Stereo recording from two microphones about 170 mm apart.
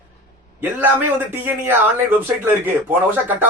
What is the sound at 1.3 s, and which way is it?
A man's voice, 10° right (ahead or behind).